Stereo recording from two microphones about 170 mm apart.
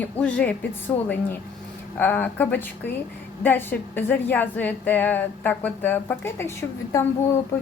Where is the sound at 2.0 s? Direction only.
10° left (ahead or behind).